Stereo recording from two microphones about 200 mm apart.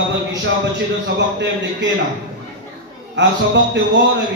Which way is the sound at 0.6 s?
60° right (ahead or behind).